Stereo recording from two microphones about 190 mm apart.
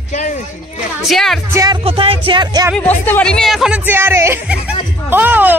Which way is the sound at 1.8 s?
30° right (ahead or behind).